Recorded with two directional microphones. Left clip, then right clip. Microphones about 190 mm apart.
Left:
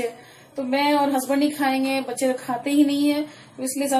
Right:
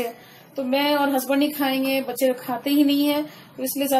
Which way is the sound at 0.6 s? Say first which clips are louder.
Left 1 dB; 35° right (ahead or behind).